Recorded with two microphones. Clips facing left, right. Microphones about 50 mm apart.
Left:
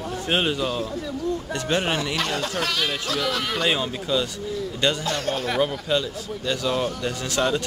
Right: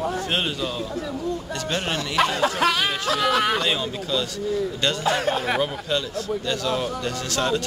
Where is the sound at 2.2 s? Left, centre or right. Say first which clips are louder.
Right 5 dB; centre.